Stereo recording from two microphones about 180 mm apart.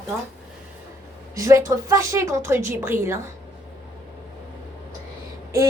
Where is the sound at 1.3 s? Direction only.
15° right (ahead or behind).